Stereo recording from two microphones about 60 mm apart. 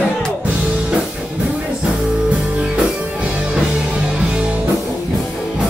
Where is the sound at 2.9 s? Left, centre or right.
Centre.